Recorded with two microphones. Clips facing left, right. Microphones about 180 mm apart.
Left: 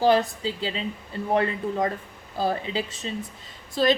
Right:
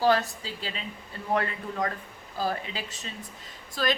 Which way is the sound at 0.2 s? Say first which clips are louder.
Left 7 dB; 25° left (ahead or behind).